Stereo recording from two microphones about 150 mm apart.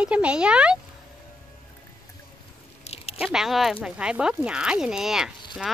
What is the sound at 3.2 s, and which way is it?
A child's voice, 5° right (ahead or behind).